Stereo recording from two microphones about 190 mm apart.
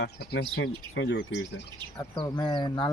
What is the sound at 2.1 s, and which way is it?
Speech, 25° left (ahead or behind).